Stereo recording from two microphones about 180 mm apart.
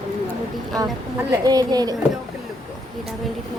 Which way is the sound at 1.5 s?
20° right (ahead or behind).